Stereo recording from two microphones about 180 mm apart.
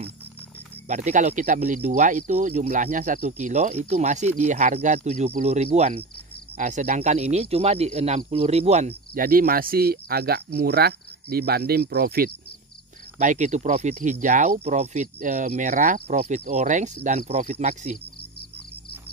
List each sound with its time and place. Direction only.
0.8 s speech: 40° right (ahead or behind)
9.1 s speech: 55° right (ahead or behind)
13.2 s speech: 45° right (ahead or behind)